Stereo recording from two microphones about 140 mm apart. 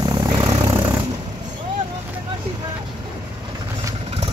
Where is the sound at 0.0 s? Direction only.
30° right (ahead or behind).